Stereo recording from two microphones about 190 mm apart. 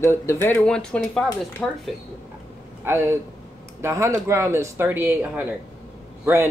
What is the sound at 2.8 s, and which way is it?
Speech, 10° right (ahead or behind).